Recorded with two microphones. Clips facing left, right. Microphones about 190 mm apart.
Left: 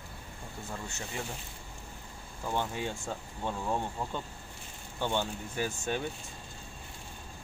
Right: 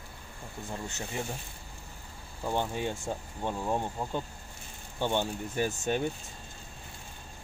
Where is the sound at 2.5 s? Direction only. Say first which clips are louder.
Right 2 dB; 15° right (ahead or behind).